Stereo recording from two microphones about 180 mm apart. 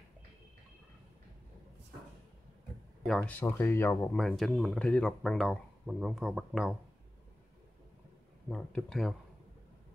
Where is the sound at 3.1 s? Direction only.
5° left (ahead or behind).